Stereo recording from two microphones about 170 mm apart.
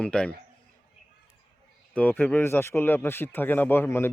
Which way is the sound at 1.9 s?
10° left (ahead or behind).